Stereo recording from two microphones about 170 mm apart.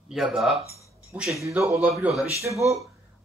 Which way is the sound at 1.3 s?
15° right (ahead or behind).